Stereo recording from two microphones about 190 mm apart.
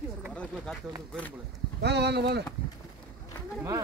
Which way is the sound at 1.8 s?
60° right (ahead or behind).